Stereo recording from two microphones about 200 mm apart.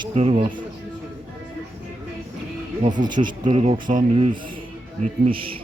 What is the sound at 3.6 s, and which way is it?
Speech, 35° right (ahead or behind).